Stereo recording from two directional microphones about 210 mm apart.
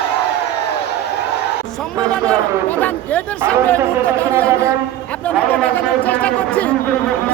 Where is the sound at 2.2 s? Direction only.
10° left (ahead or behind).